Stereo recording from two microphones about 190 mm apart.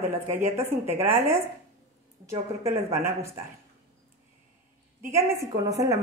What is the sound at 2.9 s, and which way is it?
Speech, 15° right (ahead or behind).